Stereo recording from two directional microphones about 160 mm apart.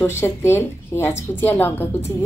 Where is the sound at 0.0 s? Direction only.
15° left (ahead or behind).